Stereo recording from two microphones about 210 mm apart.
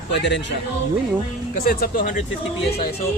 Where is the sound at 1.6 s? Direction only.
40° left (ahead or behind).